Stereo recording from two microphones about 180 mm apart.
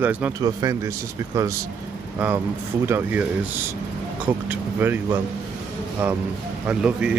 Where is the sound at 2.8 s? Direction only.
10° right (ahead or behind).